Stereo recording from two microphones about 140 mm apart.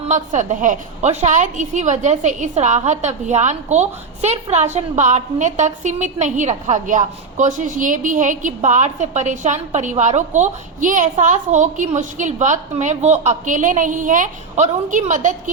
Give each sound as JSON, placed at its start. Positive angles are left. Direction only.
{"t": 0.1, "sound": "a woman's voice", "side_deg": -60}